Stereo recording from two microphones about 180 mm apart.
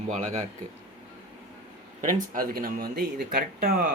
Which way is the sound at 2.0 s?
50° right (ahead or behind).